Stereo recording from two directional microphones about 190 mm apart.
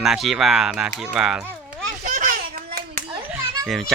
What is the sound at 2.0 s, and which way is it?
Children playing, 45° right (ahead or behind).